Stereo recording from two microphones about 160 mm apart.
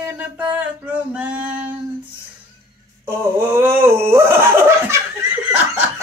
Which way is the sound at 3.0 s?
15° right (ahead or behind).